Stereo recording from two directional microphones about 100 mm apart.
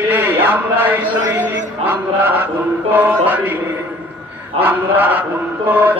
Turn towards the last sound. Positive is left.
turn(degrees=-20)  # may be behind; listen again after turning